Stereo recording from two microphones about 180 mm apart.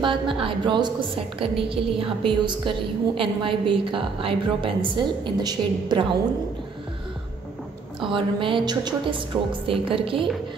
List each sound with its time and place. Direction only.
0.0 s a woman's voice: 30° right (ahead or behind)
8.0 s a woman's voice: 30° right (ahead or behind)